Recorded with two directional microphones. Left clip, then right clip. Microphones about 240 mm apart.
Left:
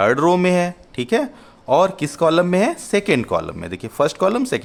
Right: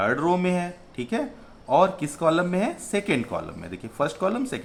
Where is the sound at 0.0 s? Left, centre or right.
Left.